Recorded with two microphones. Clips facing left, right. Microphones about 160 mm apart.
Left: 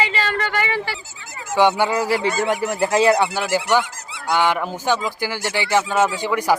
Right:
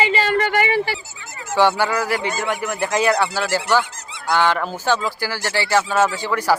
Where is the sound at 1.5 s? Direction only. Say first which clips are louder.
Left 1 dB; 20° left (ahead or behind).